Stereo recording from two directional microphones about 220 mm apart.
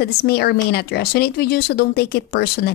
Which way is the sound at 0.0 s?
45° left (ahead or behind).